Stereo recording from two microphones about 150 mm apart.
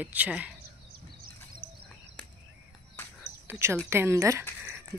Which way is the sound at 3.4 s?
15° right (ahead or behind).